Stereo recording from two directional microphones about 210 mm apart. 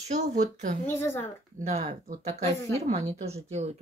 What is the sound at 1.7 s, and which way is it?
Speech, 35° right (ahead or behind).